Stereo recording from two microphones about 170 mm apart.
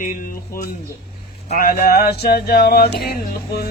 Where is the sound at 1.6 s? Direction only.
60° left (ahead or behind).